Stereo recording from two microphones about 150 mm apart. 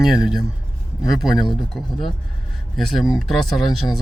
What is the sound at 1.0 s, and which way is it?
Speech, centre (ahead or behind).